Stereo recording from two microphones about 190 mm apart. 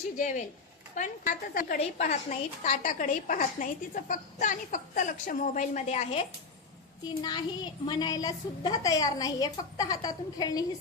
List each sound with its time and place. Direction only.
0.2 s a woman's voice: 40° left (ahead or behind)
1.8 s a woman's voice: 30° left (ahead or behind)
2.6 s a woman's voice: 45° left (ahead or behind)
7.1 s a woman's voice: 20° left (ahead or behind)